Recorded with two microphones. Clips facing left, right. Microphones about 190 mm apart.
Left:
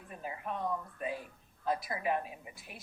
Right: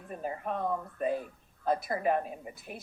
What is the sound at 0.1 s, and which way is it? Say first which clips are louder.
Speech: right 5 dB; 45° right (ahead or behind).